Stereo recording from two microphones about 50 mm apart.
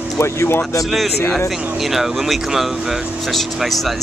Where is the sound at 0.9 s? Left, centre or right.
Centre.